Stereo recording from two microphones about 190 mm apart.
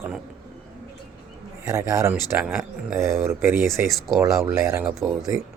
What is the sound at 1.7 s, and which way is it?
Speech, 15° right (ahead or behind).